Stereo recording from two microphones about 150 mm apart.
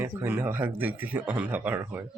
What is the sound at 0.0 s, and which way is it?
Speech, 15° right (ahead or behind).